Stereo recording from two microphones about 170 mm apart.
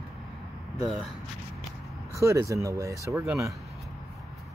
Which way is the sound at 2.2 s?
15° right (ahead or behind).